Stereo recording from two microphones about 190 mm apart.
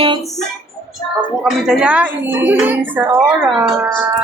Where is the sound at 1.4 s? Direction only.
Centre (ahead or behind).